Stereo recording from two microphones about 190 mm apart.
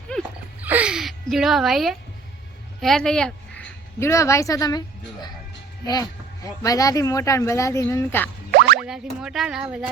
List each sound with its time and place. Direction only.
0.6 s a sound: 10° right (ahead or behind)
2.8 s speech: 5° left (ahead or behind)
4.0 s speech: 15° left (ahead or behind)
5.8 s speech: 20° left (ahead or behind)
8.5 s boing: 55° right (ahead or behind)
8.9 s speech: centre (ahead or behind)